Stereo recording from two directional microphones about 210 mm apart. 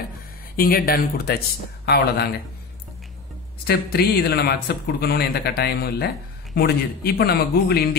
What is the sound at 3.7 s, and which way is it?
Speech, 45° left (ahead or behind).